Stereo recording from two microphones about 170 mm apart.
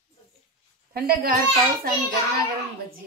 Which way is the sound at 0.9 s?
60° right (ahead or behind).